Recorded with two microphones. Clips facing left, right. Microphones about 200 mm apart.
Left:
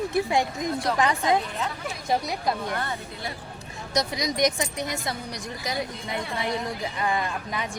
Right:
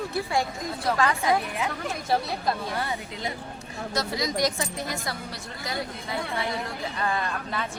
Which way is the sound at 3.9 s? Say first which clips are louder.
Left 2 dB; 20° left (ahead or behind).